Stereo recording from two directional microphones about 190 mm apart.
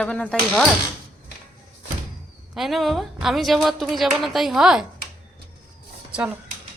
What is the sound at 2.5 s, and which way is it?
A woman's voice, centre (ahead or behind).